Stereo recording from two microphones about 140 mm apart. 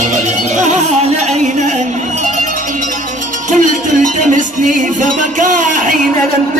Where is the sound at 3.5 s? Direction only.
65° right (ahead or behind).